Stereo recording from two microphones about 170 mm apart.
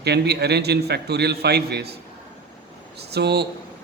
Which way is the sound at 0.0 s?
75° right (ahead or behind).